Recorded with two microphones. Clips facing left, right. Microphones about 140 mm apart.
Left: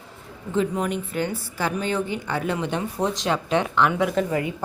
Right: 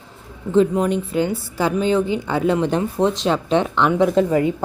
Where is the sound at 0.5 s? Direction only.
30° right (ahead or behind).